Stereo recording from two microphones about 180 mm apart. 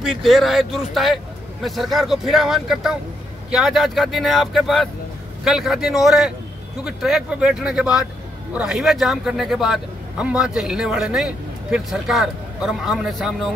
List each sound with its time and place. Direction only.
0.0 s a man's voice: centre (ahead or behind)